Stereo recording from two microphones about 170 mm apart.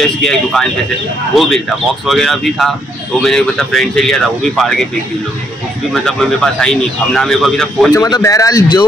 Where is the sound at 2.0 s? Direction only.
Centre (ahead or behind).